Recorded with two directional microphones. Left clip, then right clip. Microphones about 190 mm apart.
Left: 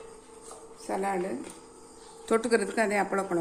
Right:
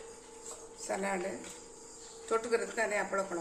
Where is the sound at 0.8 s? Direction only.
40° left (ahead or behind).